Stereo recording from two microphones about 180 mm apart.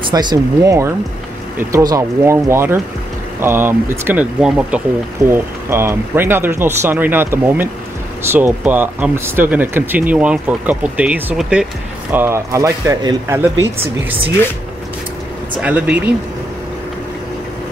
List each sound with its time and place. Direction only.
0.1 s speech: 25° right (ahead or behind)
15.6 s speech: 5° right (ahead or behind)